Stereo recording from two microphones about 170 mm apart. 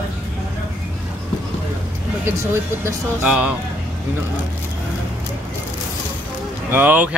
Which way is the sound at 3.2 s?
10° right (ahead or behind).